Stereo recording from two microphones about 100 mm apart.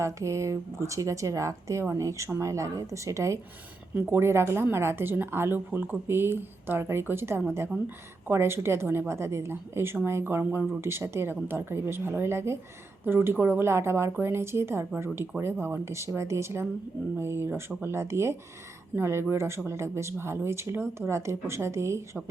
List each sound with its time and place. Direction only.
0.0 s speech: 30° right (ahead or behind)